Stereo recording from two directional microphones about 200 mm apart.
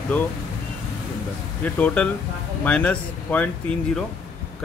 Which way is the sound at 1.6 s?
5° left (ahead or behind).